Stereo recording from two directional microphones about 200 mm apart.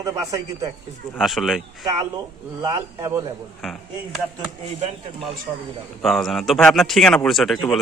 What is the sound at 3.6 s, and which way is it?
Speech, centre (ahead or behind).